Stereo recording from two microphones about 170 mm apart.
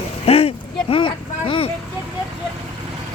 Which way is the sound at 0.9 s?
30° left (ahead or behind).